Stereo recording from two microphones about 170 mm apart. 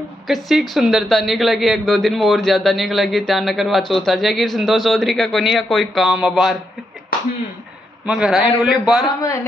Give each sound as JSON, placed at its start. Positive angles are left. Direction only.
{"t": 0.3, "sound": "a woman's voice", "side_deg": 0}
{"t": 8.0, "sound": "a woman's voice", "side_deg": -5}
{"t": 9.2, "sound": "a man's voice", "side_deg": 20}